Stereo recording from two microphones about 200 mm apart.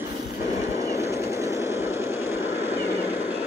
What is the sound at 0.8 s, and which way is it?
Vehicle, 15° right (ahead or behind).